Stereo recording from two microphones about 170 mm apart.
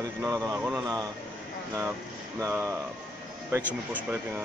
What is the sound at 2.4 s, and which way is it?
Speech, 15° right (ahead or behind).